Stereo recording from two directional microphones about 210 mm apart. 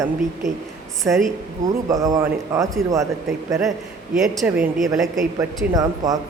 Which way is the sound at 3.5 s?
Centre (ahead or behind).